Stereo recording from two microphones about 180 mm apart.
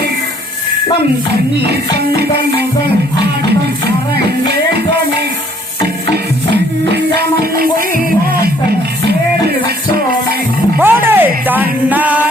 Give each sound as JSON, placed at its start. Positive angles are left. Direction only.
{"t": 1.3, "sound": "music", "side_deg": -65}
{"t": 6.9, "sound": "music", "side_deg": -65}
{"t": 10.8, "sound": "music", "side_deg": -10}